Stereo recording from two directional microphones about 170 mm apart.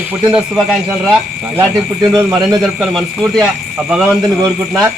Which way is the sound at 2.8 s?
Centre (ahead or behind).